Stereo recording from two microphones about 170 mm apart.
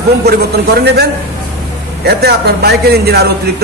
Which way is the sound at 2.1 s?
70° right (ahead or behind).